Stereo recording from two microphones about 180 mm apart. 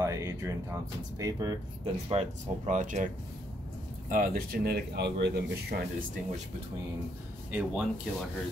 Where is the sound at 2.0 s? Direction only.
40° right (ahead or behind).